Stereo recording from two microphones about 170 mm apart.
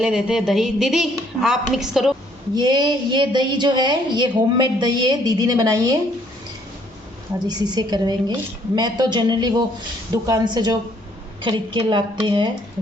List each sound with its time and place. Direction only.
0.0 s a woman's voice: 5° right (ahead or behind)
2.6 s a woman's voice: 25° right (ahead or behind)
7.4 s a woman's voice: 25° right (ahead or behind)